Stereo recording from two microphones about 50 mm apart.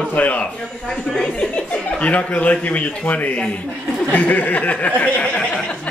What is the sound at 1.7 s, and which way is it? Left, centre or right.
A man's voice, left.